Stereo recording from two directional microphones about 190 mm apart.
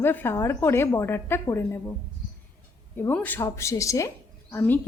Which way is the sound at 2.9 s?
10° left (ahead or behind).